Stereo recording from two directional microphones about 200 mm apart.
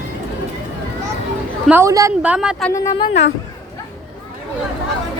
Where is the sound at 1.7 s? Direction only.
15° right (ahead or behind).